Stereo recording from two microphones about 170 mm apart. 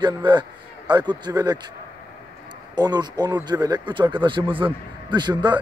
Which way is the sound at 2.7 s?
25° right (ahead or behind).